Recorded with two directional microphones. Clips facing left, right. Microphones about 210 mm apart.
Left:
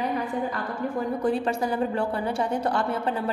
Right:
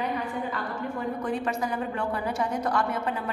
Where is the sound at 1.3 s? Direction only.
30° left (ahead or behind).